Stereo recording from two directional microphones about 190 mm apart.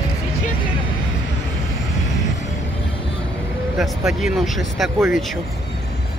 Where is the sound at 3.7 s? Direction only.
Centre (ahead or behind).